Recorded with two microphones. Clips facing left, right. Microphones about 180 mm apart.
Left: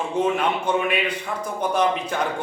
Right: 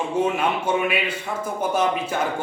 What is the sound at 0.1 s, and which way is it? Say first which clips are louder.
Speech: left 1 dB; 10° right (ahead or behind).